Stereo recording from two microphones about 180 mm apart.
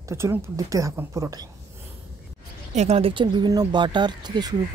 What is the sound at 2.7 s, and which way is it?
A woman's voice, 35° right (ahead or behind).